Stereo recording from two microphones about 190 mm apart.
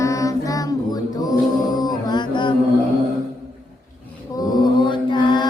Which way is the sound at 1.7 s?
20° left (ahead or behind).